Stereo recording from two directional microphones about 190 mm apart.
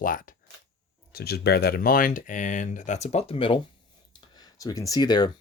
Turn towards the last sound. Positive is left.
turn(degrees=20)  # may be behind; listen again after turning